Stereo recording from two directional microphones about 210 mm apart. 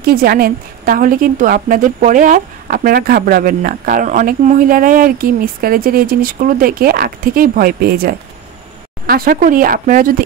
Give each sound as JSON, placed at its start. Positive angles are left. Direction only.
{"t": 0.0, "sound": "a woman's voice", "side_deg": -45}